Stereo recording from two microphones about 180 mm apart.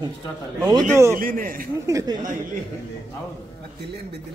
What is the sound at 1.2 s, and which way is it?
Speech, 50° right (ahead or behind).